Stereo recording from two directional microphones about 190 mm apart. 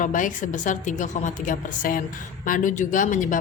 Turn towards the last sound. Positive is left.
turn(degrees=40)  # may be behind; listen again after turning